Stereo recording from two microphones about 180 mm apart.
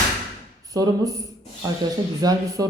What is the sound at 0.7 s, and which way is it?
Speech, 20° right (ahead or behind).